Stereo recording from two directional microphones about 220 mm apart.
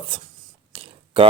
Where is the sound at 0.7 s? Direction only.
25° right (ahead or behind).